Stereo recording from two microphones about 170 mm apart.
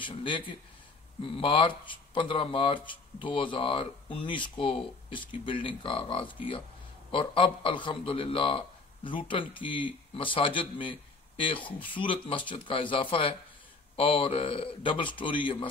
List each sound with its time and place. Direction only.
0.0 s a man's voice: 30° left (ahead or behind)